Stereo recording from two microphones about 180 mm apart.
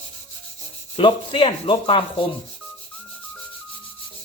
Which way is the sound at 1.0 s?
25° left (ahead or behind).